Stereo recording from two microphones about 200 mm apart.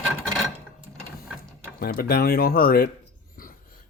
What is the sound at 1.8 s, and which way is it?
Speech, 50° left (ahead or behind).